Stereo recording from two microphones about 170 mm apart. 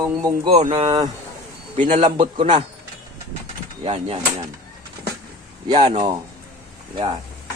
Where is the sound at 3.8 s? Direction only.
35° right (ahead or behind).